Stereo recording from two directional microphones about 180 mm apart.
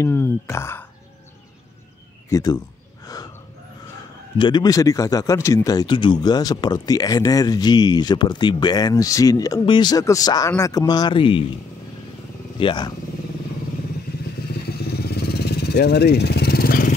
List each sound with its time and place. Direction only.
0.0 s speech: 15° left (ahead or behind)
2.2 s speech: 20° left (ahead or behind)
4.4 s speech: 25° left (ahead or behind)
12.5 s speech: 25° left (ahead or behind)
14.9 s vehicle: 60° left (ahead or behind)